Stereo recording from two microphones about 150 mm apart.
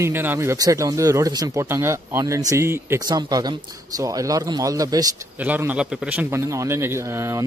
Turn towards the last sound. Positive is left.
turn(degrees=-20)  # may be behind; listen again after turning